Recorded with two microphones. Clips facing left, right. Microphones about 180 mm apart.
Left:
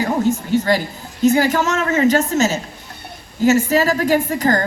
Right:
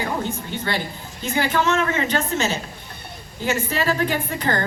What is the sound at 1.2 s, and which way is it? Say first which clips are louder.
A woman's voice: left 7 dB; 45° left (ahead or behind).